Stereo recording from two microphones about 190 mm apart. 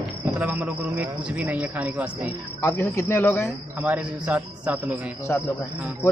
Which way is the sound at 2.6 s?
15° left (ahead or behind).